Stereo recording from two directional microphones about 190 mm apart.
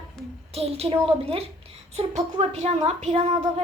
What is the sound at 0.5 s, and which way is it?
A woman's voice, 30° right (ahead or behind).